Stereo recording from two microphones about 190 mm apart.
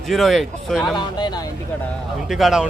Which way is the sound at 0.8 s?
20° left (ahead or behind).